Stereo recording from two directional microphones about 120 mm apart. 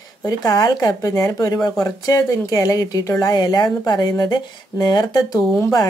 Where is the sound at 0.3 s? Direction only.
30° left (ahead or behind).